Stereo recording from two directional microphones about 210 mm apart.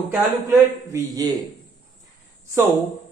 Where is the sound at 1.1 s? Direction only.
20° right (ahead or behind).